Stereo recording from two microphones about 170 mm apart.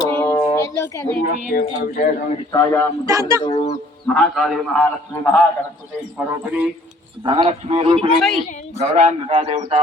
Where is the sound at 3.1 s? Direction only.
20° right (ahead or behind).